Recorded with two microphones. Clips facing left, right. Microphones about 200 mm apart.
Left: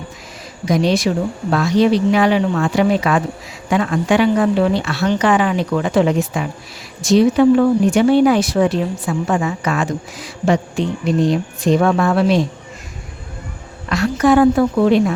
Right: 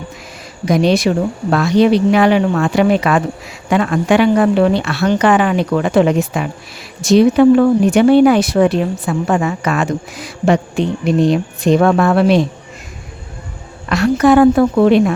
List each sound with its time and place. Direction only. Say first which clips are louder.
0.6 s speech: right 3 dB; 65° right (ahead or behind)
13.9 s speech: right 3 dB; 65° right (ahead or behind)